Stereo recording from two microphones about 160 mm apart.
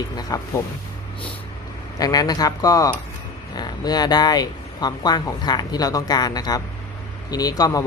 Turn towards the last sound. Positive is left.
turn(degrees=25)  # may be behind; listen again after turning